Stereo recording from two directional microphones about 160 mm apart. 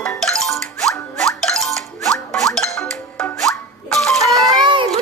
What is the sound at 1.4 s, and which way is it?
Music, centre (ahead or behind).